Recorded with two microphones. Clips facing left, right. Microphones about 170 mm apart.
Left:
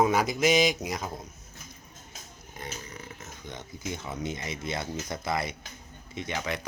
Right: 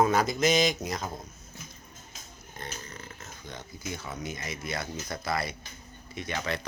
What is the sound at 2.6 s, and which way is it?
Speech, 15° left (ahead or behind).